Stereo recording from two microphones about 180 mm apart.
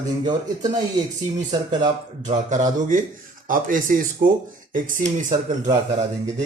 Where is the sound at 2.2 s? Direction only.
45° right (ahead or behind).